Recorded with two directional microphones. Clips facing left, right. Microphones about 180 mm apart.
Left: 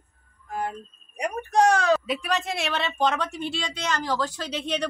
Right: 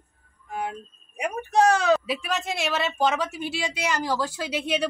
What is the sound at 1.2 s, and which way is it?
A woman's voice, 5° right (ahead or behind).